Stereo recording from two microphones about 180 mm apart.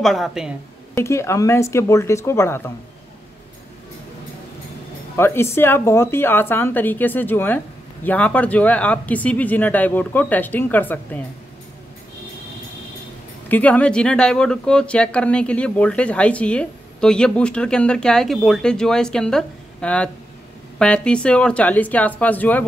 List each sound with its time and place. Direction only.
0.0 s speech: centre (ahead or behind)
0.9 s speech: 15° left (ahead or behind)
5.1 s speech: 15° left (ahead or behind)
13.5 s speech: 10° left (ahead or behind)